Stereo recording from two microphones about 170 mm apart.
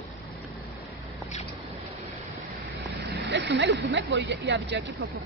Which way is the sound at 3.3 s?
90° right.